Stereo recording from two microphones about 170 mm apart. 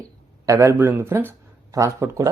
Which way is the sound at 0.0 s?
20° right (ahead or behind).